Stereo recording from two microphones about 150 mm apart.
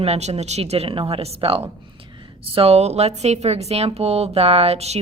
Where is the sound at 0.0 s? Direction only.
45° right (ahead or behind).